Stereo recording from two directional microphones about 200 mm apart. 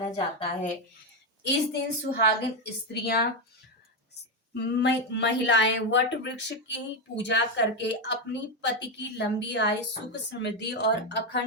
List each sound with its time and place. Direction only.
0.0 s a woman's voice: 25° left (ahead or behind)
1.5 s speech: 55° left (ahead or behind)
4.5 s speech: 60° left (ahead or behind)